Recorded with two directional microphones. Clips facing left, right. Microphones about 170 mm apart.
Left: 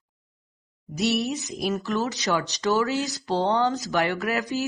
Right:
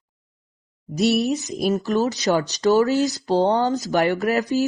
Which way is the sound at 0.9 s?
35° right (ahead or behind).